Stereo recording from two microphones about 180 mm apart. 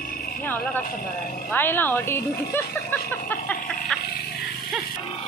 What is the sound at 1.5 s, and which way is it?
Speech, 10° left (ahead or behind).